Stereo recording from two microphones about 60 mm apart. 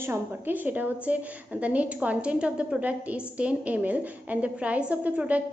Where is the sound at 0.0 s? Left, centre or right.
Right.